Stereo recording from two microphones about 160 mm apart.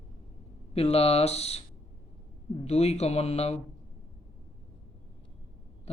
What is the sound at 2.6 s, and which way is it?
Speech, 40° left (ahead or behind).